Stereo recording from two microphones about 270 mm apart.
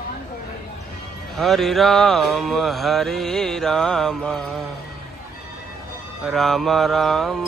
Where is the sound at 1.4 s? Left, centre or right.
Centre.